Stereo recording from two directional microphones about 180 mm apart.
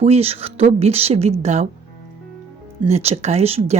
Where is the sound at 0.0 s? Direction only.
35° right (ahead or behind).